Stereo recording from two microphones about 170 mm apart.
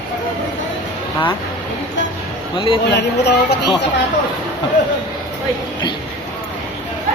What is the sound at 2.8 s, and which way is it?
Speech, 90° left.